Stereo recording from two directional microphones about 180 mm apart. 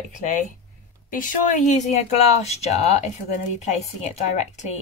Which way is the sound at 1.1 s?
40° left (ahead or behind).